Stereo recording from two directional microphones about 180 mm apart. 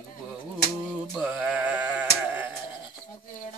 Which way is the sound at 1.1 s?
Centre (ahead or behind).